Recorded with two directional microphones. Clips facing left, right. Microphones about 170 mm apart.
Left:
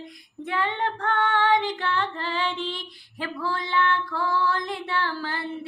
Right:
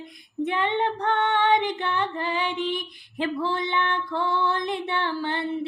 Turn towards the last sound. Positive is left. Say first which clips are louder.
# right 2 dB
turn(degrees=-20)  # may be behind; listen again after turning